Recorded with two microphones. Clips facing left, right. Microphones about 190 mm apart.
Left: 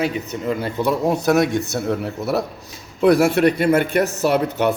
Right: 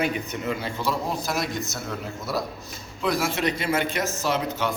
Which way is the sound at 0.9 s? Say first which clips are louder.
Left 10 dB; 65° left (ahead or behind).